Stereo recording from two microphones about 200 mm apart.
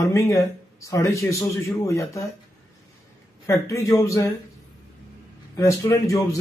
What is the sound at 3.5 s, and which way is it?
Speech, 15° left (ahead or behind).